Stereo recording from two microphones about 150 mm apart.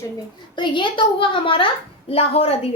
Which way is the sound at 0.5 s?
30° left (ahead or behind).